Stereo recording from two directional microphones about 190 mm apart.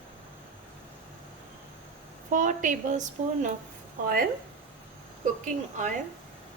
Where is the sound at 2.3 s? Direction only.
45° right (ahead or behind).